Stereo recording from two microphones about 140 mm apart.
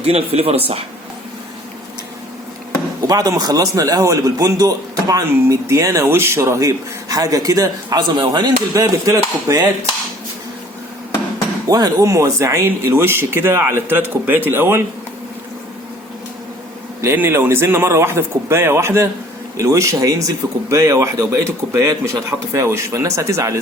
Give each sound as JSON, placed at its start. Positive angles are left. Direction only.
{"t": 0.0, "sound": "speech", "side_deg": -45}
{"t": 3.1, "sound": "a man's voice", "side_deg": -25}
{"t": 11.7, "sound": "speech", "side_deg": -25}
{"t": 17.0, "sound": "a man's voice", "side_deg": -15}